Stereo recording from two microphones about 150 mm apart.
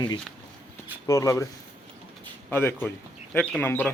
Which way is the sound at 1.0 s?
20° left (ahead or behind).